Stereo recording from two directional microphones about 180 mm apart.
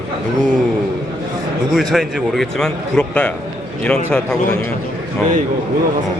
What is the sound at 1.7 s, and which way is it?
A man's voice, centre (ahead or behind).